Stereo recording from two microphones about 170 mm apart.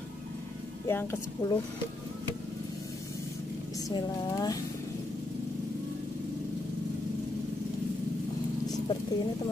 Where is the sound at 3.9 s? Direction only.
25° left (ahead or behind).